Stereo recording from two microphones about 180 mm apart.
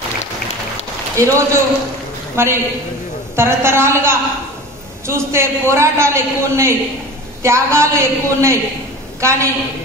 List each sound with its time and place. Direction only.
1.1 s a man's voice: 15° right (ahead or behind)